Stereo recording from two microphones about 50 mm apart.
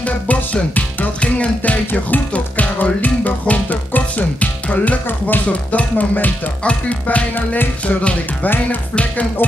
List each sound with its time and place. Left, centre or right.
0.0 s music: left
1.9 s music: left
5.0 s music: left
5.5 s music: left
6.6 s music: left